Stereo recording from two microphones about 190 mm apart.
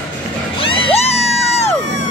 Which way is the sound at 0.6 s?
30° left (ahead or behind).